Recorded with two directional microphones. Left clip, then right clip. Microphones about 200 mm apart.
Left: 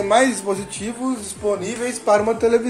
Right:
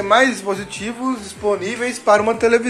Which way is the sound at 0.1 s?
10° left (ahead or behind).